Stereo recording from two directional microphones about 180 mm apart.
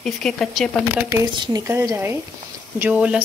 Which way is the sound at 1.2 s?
25° right (ahead or behind).